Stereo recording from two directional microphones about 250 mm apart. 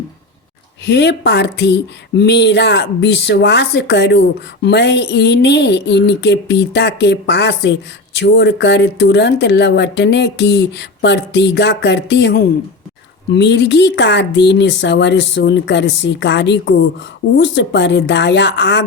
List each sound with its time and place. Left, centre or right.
0.9 s speech: left